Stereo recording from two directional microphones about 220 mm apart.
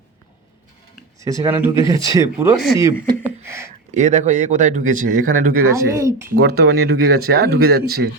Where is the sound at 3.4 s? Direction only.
10° right (ahead or behind).